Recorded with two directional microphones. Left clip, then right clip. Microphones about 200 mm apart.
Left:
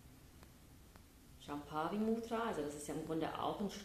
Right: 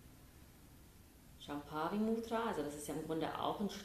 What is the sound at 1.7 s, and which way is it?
A woman's voice, 10° right (ahead or behind).